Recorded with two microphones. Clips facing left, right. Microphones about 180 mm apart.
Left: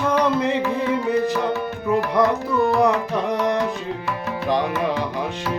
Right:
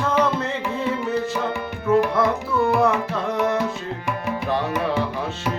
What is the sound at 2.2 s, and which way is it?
Music, 15° left (ahead or behind).